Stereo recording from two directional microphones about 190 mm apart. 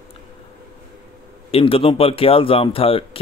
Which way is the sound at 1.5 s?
30° left (ahead or behind).